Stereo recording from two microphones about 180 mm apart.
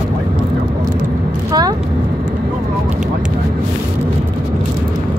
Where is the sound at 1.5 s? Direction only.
20° right (ahead or behind).